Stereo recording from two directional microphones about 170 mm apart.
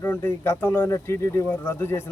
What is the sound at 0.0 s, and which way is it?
A man's voice, 15° left (ahead or behind).